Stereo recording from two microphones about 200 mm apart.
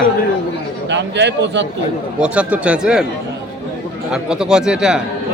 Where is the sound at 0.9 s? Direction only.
60° right (ahead or behind).